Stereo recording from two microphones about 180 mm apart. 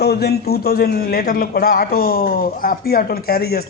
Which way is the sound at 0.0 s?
60° left (ahead or behind).